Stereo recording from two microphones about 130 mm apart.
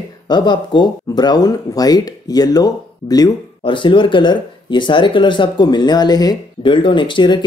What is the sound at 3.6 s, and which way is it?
Speech, 40° left (ahead or behind).